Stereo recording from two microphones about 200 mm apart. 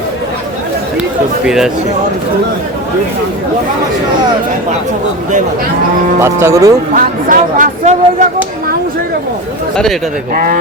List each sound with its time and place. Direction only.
1.5 s speech: 5° right (ahead or behind)
6.2 s speech: 15° right (ahead or behind)
6.9 s speech: 40° right (ahead or behind)
9.7 s speech: centre (ahead or behind)